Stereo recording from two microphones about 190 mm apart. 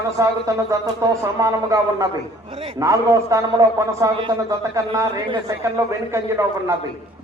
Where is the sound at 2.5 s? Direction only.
30° right (ahead or behind).